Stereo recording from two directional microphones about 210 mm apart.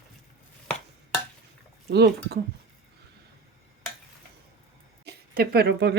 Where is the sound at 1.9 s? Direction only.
50° right (ahead or behind).